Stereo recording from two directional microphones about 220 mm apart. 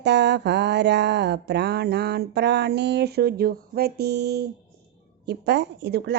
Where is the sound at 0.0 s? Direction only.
50° right (ahead or behind).